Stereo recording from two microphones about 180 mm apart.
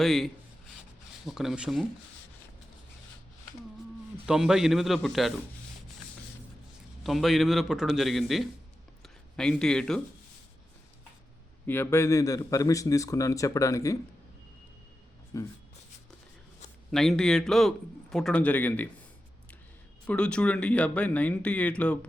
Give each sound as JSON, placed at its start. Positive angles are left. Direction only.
{"t": 0.0, "sound": "a man's voice", "side_deg": 0}
{"t": 4.3, "sound": "a man's voice", "side_deg": -5}
{"t": 7.0, "sound": "a man's voice", "side_deg": 0}
{"t": 11.6, "sound": "a man's voice", "side_deg": 10}
{"t": 15.3, "sound": "a man's voice", "side_deg": 15}
{"t": 16.9, "sound": "a man's voice", "side_deg": 0}
{"t": 20.1, "sound": "a man's voice", "side_deg": 5}